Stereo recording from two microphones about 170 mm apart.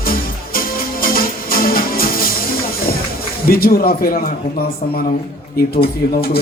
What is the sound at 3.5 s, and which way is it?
Speech, 60° left (ahead or behind).